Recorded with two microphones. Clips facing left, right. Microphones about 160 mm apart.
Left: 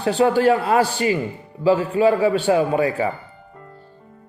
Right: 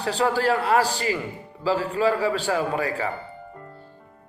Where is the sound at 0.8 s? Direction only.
35° right (ahead or behind).